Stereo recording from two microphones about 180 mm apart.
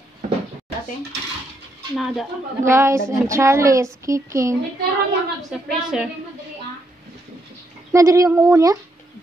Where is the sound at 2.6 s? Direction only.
15° right (ahead or behind).